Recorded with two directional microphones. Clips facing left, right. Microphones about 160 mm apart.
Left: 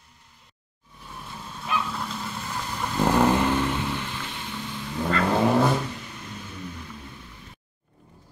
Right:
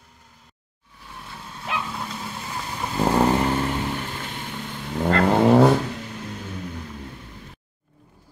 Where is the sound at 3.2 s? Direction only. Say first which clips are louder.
Right 1 dB; 35° right (ahead or behind); by 5.2 s 55° right (ahead or behind).